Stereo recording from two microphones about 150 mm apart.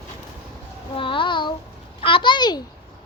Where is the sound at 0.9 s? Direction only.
35° left (ahead or behind).